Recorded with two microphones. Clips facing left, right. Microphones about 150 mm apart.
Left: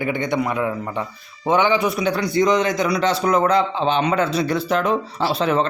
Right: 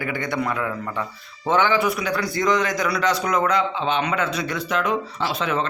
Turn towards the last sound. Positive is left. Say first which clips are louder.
# left 5 dB
turn(degrees=35)  # may be behind; listen again after turning